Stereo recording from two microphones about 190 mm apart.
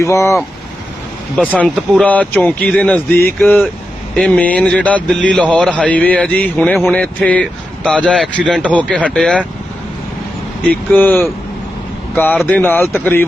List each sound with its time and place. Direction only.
0.0 s a man's voice: 15° left (ahead or behind)
1.4 s a man's voice: 5° left (ahead or behind)
1.7 s a man's voice: 5° right (ahead or behind)
2.0 s a man's voice: 10° left (ahead or behind)
10.9 s a man's voice: 10° left (ahead or behind)